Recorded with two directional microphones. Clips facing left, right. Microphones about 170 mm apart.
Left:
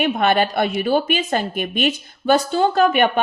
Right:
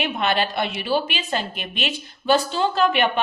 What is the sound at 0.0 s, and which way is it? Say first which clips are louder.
A woman's voice: left 5 dB; 50° left (ahead or behind).